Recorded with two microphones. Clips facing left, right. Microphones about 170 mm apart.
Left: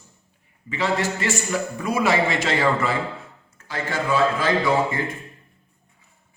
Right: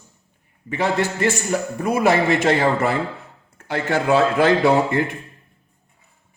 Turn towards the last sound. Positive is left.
turn(degrees=-65)  # may be behind; listen again after turning